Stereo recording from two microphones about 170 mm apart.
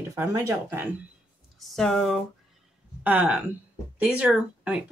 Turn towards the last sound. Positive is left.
turn(degrees=-10)  # may be behind; listen again after turning